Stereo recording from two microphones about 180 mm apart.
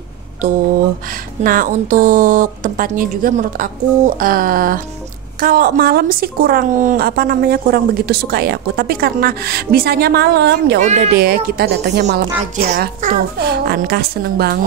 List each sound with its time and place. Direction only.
1.4 s a woman's voice: 50° right (ahead or behind); by 12.6 s 70° right (ahead or behind)
12.6 s a woman's voice: 45° right (ahead or behind)